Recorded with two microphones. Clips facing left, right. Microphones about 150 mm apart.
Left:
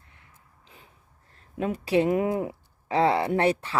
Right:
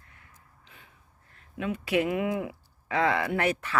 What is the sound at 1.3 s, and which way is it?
Speech, 40° left (ahead or behind).